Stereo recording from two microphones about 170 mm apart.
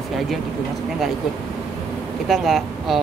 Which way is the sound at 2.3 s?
Centre (ahead or behind).